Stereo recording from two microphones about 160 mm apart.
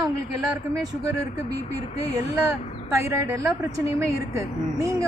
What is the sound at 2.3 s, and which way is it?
Speech, 20° right (ahead or behind).